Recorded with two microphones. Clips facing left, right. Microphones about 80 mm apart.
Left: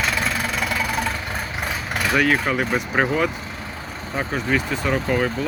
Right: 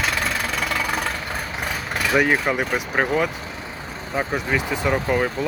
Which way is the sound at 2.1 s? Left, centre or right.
Centre.